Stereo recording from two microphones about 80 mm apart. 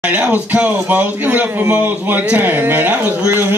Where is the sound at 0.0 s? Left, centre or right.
Right.